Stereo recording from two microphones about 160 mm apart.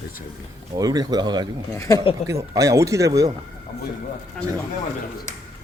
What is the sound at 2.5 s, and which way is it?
Speech, 20° right (ahead or behind).